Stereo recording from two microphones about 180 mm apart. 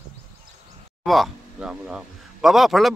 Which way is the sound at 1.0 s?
Centre (ahead or behind).